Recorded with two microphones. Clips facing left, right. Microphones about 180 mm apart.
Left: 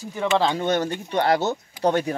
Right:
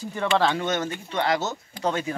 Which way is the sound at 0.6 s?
35° left (ahead or behind).